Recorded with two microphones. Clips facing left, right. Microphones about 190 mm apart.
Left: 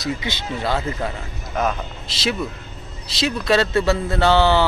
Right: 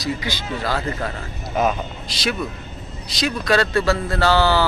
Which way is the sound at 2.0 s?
25° left (ahead or behind).